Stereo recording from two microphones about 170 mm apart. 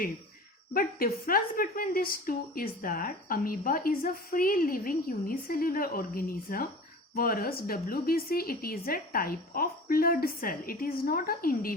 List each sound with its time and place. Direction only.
0.7 s a woman's voice: 60° left (ahead or behind)